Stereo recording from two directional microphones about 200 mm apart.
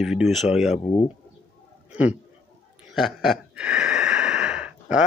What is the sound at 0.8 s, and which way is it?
Speech, 30° left (ahead or behind).